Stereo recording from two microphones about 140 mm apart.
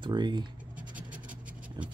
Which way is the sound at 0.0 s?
30° right (ahead or behind).